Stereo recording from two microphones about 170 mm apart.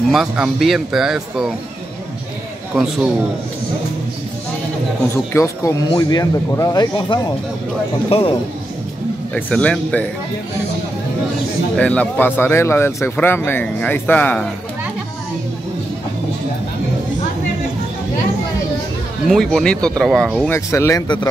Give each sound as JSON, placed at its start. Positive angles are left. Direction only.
{"t": 0.1, "sound": "speech", "side_deg": 0}
{"t": 2.7, "sound": "a man's voice", "side_deg": -5}
{"t": 5.1, "sound": "speech", "side_deg": 15}
{"t": 9.3, "sound": "speech", "side_deg": 5}
{"t": 11.7, "sound": "speech", "side_deg": 5}
{"t": 19.2, "sound": "speech", "side_deg": 0}
{"t": 20.5, "sound": "speech", "side_deg": 15}